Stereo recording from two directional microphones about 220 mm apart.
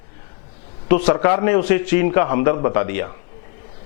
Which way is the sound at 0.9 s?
10° left (ahead or behind).